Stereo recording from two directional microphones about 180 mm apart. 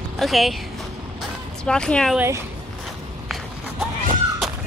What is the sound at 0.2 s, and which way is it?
Speech, centre (ahead or behind).